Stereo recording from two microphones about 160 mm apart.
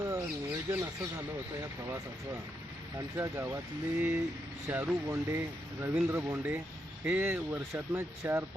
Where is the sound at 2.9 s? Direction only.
20° right (ahead or behind).